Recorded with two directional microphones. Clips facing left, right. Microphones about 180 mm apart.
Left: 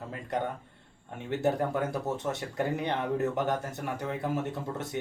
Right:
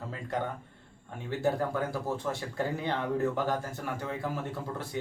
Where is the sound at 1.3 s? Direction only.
20° left (ahead or behind).